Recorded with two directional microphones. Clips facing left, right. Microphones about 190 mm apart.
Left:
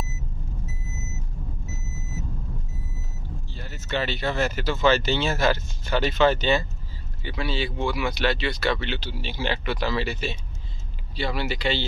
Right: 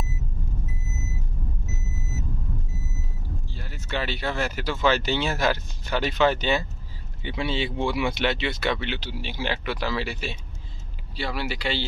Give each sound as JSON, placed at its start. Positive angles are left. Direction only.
{"t": 3.5, "sound": "speech", "side_deg": -10}
{"t": 7.2, "sound": "speech", "side_deg": -20}